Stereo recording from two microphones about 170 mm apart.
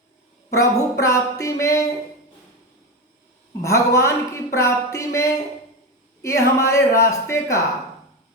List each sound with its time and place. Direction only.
0.5 s speech: 20° left (ahead or behind)
3.6 s speech: 15° left (ahead or behind)